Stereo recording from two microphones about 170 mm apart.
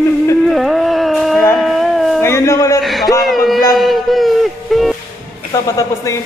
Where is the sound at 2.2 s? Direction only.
15° left (ahead or behind).